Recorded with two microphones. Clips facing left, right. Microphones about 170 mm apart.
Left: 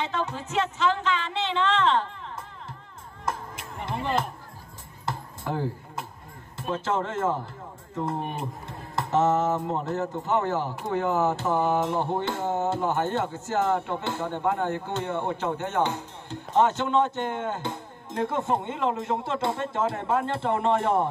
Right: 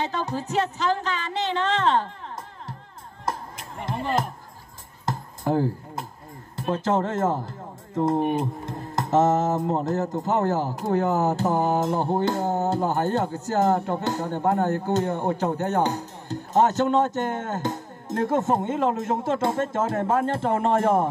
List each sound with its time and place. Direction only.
0.0 s speech: 35° right (ahead or behind)
3.3 s music: 40° right (ahead or behind)
5.0 s a sound: 40° right (ahead or behind)
6.5 s speech: 40° right (ahead or behind)